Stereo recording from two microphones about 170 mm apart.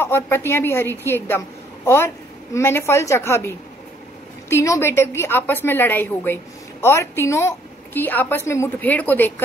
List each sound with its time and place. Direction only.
0.0 s a woman's voice: 15° left (ahead or behind)